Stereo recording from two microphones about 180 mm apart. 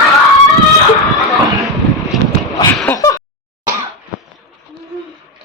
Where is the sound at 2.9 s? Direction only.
20° left (ahead or behind).